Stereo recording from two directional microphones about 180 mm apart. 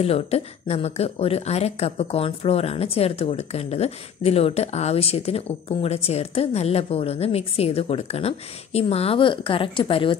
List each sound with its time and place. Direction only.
0.0 s a woman's voice: 35° left (ahead or behind)